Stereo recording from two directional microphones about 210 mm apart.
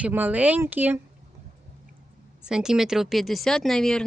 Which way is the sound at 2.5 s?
5° right (ahead or behind).